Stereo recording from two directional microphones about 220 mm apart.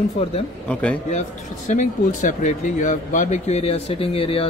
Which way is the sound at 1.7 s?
35° left (ahead or behind).